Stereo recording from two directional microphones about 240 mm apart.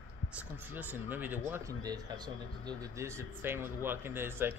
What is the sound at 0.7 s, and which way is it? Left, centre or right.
Speech, centre.